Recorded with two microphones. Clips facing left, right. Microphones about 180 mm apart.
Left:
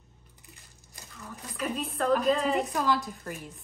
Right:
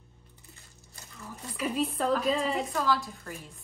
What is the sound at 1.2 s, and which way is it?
Speech, centre (ahead or behind).